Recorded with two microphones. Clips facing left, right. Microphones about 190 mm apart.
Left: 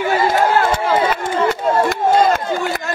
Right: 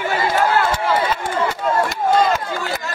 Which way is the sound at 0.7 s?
55° left (ahead or behind).